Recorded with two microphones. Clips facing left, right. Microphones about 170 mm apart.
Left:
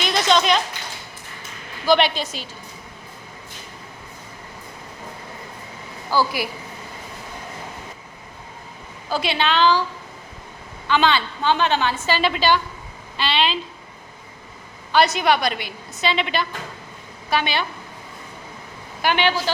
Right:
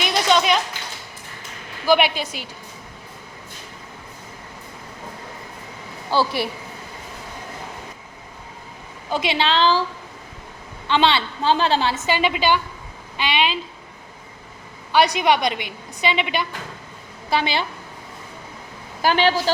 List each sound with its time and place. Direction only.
0.0 s a sound: 10° right (ahead or behind)
1.9 s a woman's voice: 10° right (ahead or behind)
6.1 s a woman's voice: 25° right (ahead or behind)
9.0 s a woman's voice: 20° right (ahead or behind)
10.8 s a woman's voice: 25° right (ahead or behind)
12.0 s a woman's voice: 15° right (ahead or behind)
14.9 s a woman's voice: 15° right (ahead or behind)
17.2 s a woman's voice: 25° right (ahead or behind)
19.0 s a woman's voice: 35° right (ahead or behind)